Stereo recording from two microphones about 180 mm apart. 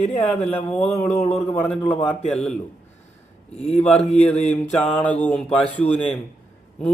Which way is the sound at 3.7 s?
5° left (ahead or behind).